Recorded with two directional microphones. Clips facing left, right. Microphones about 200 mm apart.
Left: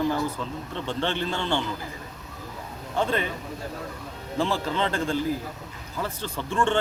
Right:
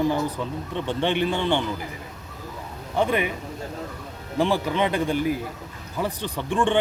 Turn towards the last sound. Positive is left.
turn(degrees=-15)  # may be behind; listen again after turning